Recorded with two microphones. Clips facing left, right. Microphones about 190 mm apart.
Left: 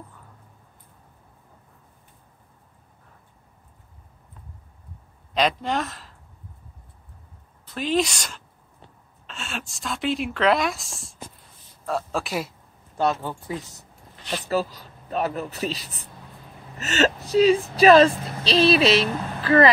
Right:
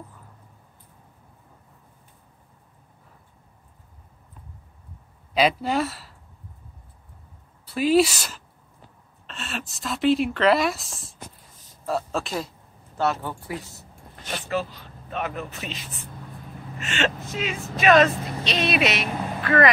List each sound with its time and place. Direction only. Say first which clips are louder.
5.3 s speech: right 2 dB; 5° right (ahead or behind)
7.7 s a woman's voice: right 5 dB; 10° right (ahead or behind)
12.9 s speech: left 1 dB; 15° left (ahead or behind)
14.4 s a woman's voice: left 3 dB; 40° left (ahead or behind)